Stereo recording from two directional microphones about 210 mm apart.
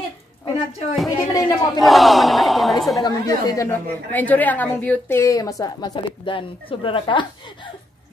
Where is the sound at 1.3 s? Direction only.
20° left (ahead or behind).